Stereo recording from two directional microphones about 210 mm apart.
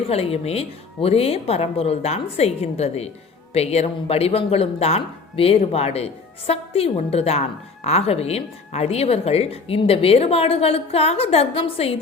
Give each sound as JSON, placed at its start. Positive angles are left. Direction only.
{"t": 0.1, "sound": "a woman's voice", "side_deg": 30}